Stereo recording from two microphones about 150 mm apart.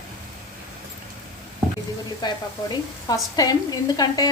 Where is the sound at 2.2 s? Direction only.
25° left (ahead or behind).